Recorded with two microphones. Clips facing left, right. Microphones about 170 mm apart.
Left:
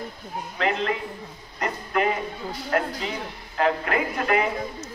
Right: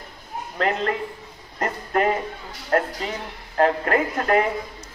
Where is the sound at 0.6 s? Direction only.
45° right (ahead or behind).